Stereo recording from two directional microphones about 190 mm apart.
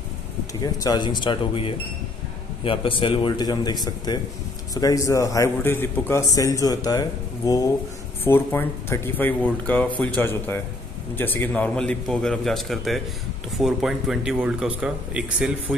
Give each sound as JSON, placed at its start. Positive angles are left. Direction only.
{"t": 0.6, "sound": "a man's voice", "side_deg": 20}